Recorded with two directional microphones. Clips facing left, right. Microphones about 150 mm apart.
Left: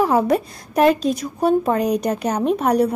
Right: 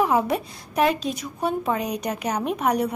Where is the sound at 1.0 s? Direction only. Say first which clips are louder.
Left 7 dB; 40° left (ahead or behind).